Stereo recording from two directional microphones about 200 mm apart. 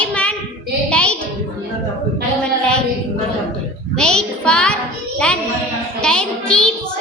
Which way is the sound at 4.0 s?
5° left (ahead or behind).